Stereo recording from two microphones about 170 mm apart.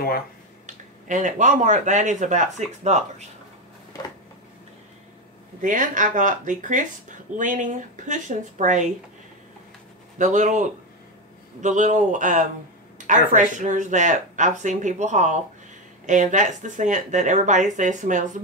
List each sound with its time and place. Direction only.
0.7 s speech: 45° right (ahead or behind)
5.6 s speech: 50° right (ahead or behind)
10.1 s speech: 45° right (ahead or behind)